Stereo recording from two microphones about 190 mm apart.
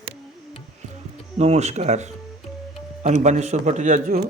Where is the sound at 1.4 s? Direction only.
35° right (ahead or behind).